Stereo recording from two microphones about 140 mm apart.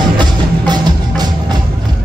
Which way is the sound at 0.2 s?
30° right (ahead or behind).